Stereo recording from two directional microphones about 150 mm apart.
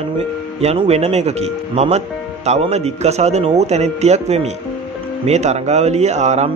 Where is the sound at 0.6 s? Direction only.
45° right (ahead or behind).